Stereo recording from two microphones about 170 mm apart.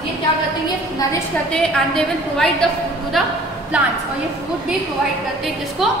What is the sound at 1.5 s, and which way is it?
A woman's voice, 5° left (ahead or behind).